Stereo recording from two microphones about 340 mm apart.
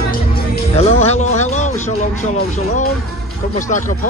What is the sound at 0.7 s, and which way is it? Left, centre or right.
Music, centre.